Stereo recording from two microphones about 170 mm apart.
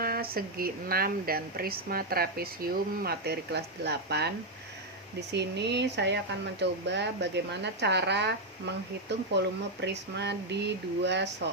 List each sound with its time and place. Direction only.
0.0 s speech: 60° right (ahead or behind)
5.3 s speech: 85° right